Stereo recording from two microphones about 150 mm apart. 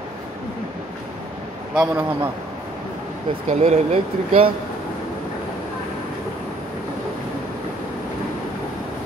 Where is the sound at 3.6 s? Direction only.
45° right (ahead or behind).